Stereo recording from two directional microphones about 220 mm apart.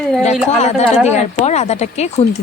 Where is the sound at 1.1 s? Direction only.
30° left (ahead or behind).